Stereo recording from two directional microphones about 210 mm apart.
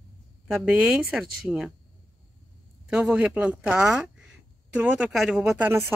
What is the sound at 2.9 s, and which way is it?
Speech, 5° right (ahead or behind).